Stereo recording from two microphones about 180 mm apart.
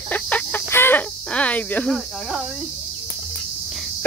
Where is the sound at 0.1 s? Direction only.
10° left (ahead or behind).